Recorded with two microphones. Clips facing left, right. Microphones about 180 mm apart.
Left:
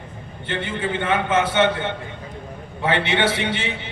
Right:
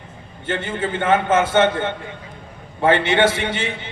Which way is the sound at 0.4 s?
45° right (ahead or behind).